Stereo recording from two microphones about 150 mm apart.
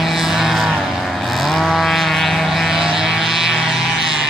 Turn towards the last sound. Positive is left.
turn(degrees=0)  # may be behind; listen again after turning